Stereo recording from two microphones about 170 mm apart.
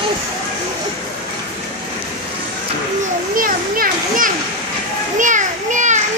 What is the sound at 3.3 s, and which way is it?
Children playing, 55° right (ahead or behind).